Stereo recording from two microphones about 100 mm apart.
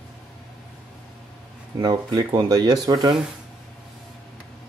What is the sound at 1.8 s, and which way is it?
Speech, 40° right (ahead or behind).